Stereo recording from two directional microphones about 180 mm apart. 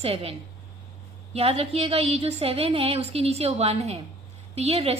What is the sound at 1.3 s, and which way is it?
A woman's voice, 35° right (ahead or behind).